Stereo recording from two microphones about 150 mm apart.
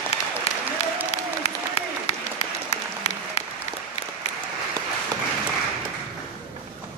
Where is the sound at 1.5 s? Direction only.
45° left (ahead or behind).